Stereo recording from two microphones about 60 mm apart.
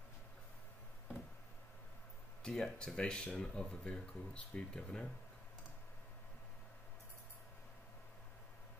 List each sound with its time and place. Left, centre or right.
2.4 s speech: centre